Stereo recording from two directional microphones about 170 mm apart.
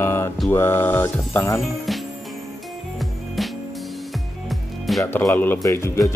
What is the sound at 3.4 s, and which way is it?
Music, centre (ahead or behind).